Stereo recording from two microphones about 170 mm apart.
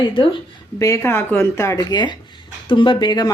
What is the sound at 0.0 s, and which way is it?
Speech, 30° left (ahead or behind).